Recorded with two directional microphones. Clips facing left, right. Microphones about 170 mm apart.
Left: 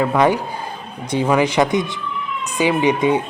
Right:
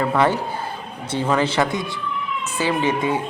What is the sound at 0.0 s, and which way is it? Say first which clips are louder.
A man's voice: left 3 dB; 10° left (ahead or behind).